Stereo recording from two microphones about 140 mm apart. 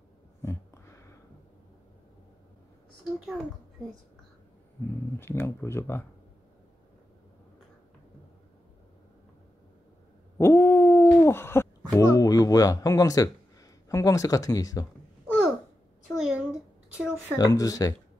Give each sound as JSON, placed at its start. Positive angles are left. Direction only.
{"t": 0.4, "sound": "a sound", "side_deg": 20}
{"t": 5.2, "sound": "speech", "side_deg": 15}
{"t": 10.3, "sound": "hoot", "side_deg": 15}
{"t": 12.0, "sound": "speech", "side_deg": 25}
{"t": 16.1, "sound": "a sound", "side_deg": -5}
{"t": 17.4, "sound": "speech", "side_deg": 25}